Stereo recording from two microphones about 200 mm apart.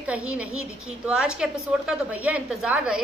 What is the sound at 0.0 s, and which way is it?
A woman's voice, 5° right (ahead or behind).